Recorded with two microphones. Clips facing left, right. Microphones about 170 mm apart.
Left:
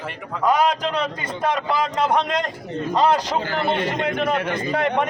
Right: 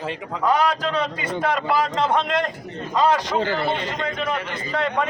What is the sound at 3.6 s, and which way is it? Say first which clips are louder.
A man's voice: left 3 dB; 55° left (ahead or behind).